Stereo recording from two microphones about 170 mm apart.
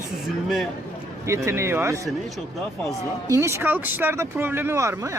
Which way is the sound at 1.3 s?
15° right (ahead or behind).